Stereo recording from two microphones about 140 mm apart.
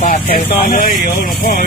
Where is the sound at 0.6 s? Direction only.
85° left.